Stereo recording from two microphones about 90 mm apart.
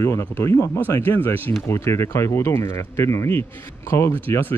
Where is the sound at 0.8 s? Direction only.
25° left (ahead or behind).